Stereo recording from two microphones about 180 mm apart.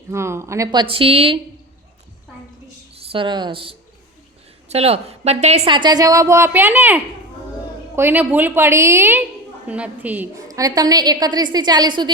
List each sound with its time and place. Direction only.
0.1 s a woman's voice: 15° right (ahead or behind); by 1.4 s 30° right (ahead or behind)
2.9 s a woman's voice: 30° right (ahead or behind)